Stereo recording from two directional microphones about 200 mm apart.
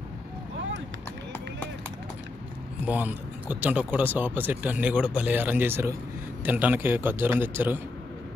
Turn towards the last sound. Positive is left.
turn(degrees=-10)  # may be behind; listen again after turning